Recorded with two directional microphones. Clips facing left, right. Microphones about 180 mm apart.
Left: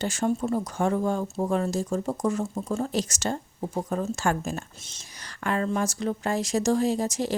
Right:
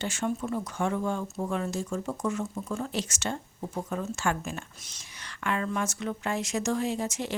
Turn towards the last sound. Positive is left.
turn(degrees=35)  # may be behind; listen again after turning